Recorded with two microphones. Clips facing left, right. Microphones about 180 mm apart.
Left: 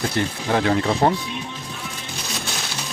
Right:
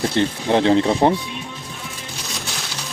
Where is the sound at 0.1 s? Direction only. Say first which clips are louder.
Right 4 dB; 25° right (ahead or behind).